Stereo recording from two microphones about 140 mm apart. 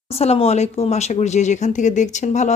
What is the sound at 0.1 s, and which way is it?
Speech, 45° left (ahead or behind).